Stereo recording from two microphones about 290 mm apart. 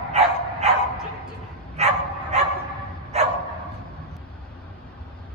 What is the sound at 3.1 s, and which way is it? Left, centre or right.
Dog, right.